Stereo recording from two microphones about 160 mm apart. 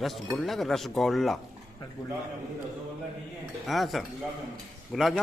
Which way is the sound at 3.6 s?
Centre (ahead or behind).